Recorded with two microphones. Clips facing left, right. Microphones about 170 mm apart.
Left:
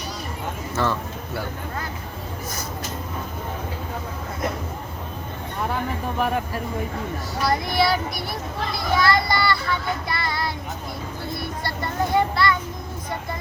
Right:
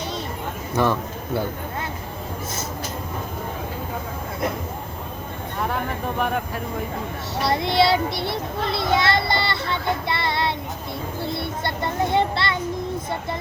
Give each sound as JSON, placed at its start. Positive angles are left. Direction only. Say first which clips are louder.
{"t": 0.7, "sound": "speech", "louder": "right 4 dB", "side_deg": -15}
{"t": 5.6, "sound": "a sound", "louder": "even", "side_deg": 0}
{"t": 7.4, "sound": "child singing", "louder": "right 2 dB", "side_deg": -25}